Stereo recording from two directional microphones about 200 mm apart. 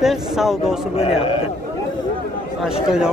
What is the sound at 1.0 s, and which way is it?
Speech, 25° left (ahead or behind).